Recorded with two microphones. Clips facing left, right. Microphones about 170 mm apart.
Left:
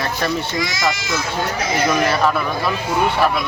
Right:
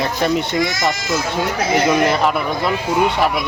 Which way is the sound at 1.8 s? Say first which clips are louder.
Even; 20° right (ahead or behind).